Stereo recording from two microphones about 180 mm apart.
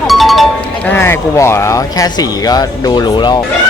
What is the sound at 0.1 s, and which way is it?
Music, centre (ahead or behind).